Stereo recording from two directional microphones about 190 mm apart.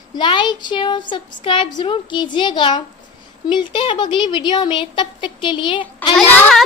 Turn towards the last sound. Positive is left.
turn(degrees=0)  # may be behind; listen again after turning